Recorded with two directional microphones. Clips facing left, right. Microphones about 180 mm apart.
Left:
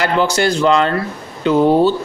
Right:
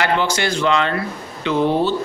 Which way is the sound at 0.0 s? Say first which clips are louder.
Left 4 dB; 40° left (ahead or behind).